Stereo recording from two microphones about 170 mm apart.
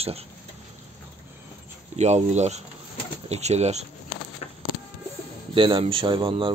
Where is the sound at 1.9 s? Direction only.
40° right (ahead or behind).